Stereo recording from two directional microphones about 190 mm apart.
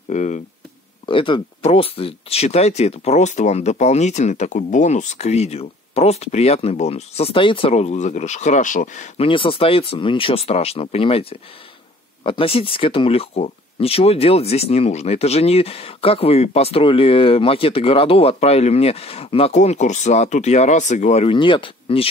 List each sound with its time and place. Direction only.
0.1 s speech: 40° left (ahead or behind)
1.0 s speech: 25° left (ahead or behind)